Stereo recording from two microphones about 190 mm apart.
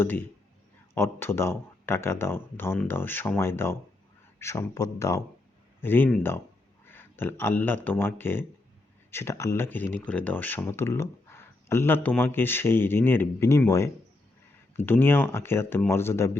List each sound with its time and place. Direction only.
0.0 s a man's voice: 10° left (ahead or behind)